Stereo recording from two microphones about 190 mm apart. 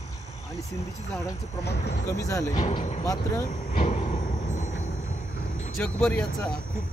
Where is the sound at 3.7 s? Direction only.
35° left (ahead or behind).